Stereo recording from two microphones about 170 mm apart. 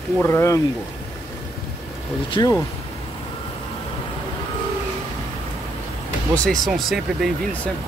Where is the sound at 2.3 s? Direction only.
20° left (ahead or behind).